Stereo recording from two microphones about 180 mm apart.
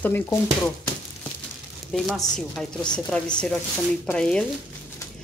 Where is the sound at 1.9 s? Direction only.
Centre (ahead or behind).